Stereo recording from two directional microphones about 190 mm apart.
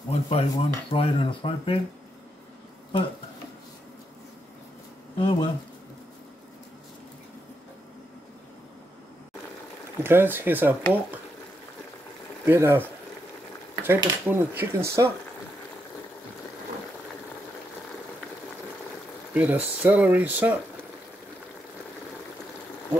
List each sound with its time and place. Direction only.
0.1 s speech: 30° left (ahead or behind)
5.1 s speech: 25° left (ahead or behind)
10.0 s speech: 10° right (ahead or behind)
12.4 s speech: 10° right (ahead or behind)
13.8 s speech: 10° right (ahead or behind)
19.3 s speech: 10° right (ahead or behind)